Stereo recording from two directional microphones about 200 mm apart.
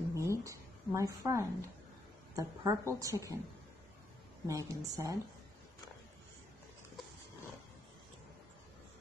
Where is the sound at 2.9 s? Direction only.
15° right (ahead or behind).